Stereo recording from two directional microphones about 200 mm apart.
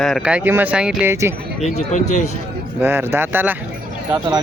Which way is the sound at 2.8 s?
10° right (ahead or behind).